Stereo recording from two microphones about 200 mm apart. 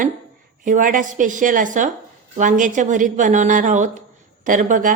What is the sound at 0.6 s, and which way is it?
A woman's voice, 40° right (ahead or behind).